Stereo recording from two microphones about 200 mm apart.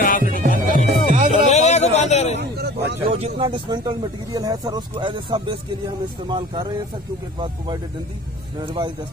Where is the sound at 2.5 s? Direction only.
55° right (ahead or behind).